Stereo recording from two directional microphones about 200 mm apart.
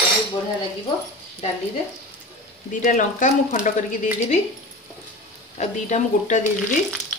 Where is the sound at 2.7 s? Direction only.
40° left (ahead or behind).